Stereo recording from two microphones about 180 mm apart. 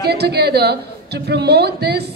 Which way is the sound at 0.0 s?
65° right (ahead or behind).